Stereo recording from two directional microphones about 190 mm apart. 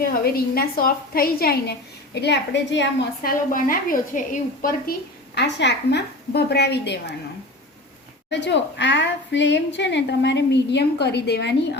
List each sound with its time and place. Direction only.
0.0 s a woman's voice: 50° left (ahead or behind)
2.2 s a woman's voice: 70° left (ahead or behind)
3.2 s a woman's voice: 45° left (ahead or behind); by 7.0 s 65° left (ahead or behind)
8.3 s a woman's voice: 65° left (ahead or behind)